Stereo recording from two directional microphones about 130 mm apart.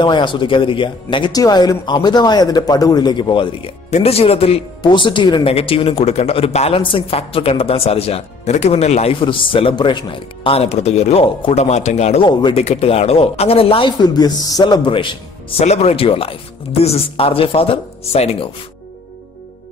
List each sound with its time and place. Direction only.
0.0 s speech: 40° left (ahead or behind)
3.9 s speech: 50° left (ahead or behind)
4.8 s speech: 40° left (ahead or behind)
5.5 s speech: 45° left (ahead or behind)
12.3 s speech: 35° left (ahead or behind)
12.5 s speech: 55° left (ahead or behind); by 15.0 s 40° left (ahead or behind)
15.5 s speech: 55° left (ahead or behind)